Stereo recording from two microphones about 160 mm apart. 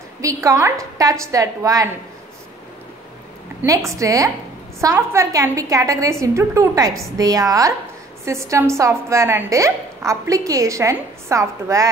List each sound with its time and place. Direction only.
0.2 s a woman's voice: 20° right (ahead or behind)
3.6 s a woman's voice: 20° right (ahead or behind)